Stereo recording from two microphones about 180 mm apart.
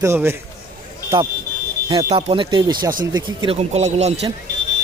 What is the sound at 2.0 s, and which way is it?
Speech, 35° right (ahead or behind).